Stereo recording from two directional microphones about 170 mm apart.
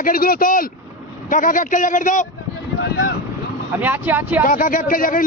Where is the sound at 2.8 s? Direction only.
90° left.